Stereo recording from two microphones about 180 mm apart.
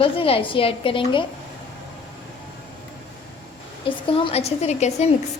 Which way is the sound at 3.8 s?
30° left (ahead or behind).